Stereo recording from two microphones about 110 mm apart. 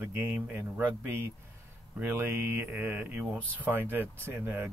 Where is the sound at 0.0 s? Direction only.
20° right (ahead or behind).